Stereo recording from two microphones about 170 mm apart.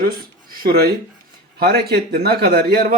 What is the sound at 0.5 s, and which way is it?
Speech, 60° right (ahead or behind).